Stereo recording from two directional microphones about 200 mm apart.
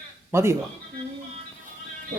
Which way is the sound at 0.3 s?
10° right (ahead or behind).